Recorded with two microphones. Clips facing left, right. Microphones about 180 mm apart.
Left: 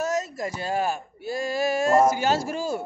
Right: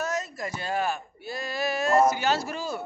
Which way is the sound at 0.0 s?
45° left (ahead or behind).